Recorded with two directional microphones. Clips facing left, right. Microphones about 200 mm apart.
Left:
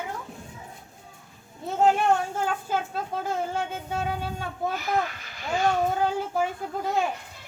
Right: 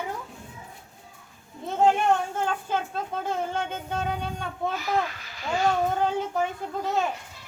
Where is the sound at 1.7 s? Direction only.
5° left (ahead or behind).